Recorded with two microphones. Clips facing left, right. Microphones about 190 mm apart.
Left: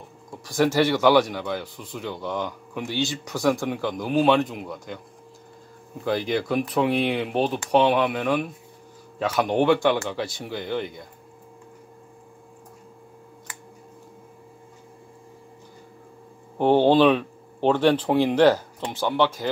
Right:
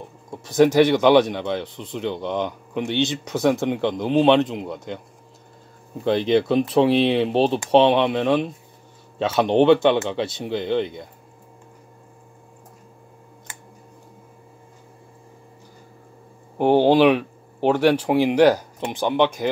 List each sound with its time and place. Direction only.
0.5 s speech: 20° right (ahead or behind)
6.0 s speech: 25° right (ahead or behind)
16.5 s speech: 15° right (ahead or behind)